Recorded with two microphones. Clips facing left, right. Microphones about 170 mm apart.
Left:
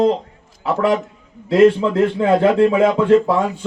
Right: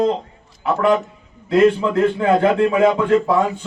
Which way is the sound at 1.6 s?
30° left (ahead or behind).